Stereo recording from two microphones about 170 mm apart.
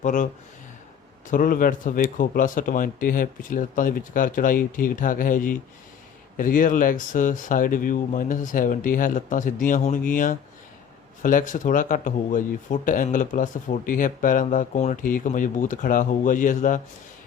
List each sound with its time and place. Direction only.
0.0 s speech: 45° left (ahead or behind)
1.3 s speech: 55° left (ahead or behind)